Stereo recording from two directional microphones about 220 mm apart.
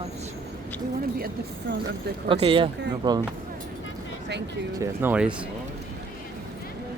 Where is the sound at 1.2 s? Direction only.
40° right (ahead or behind).